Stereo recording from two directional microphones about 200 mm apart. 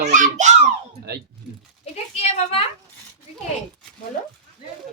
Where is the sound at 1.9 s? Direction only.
30° left (ahead or behind).